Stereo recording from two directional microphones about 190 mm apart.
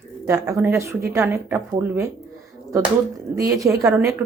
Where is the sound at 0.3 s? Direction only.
15° right (ahead or behind).